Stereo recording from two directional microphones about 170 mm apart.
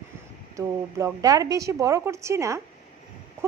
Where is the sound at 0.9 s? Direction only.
20° right (ahead or behind).